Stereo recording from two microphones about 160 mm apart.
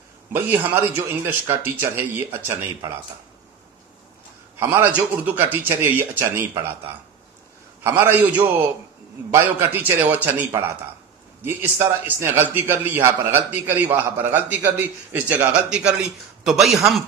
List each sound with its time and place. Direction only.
0.3 s a man's voice: 10° right (ahead or behind)
4.6 s a man's voice: 15° right (ahead or behind)
7.8 s a man's voice: 10° right (ahead or behind)
11.4 s a man's voice: 15° right (ahead or behind)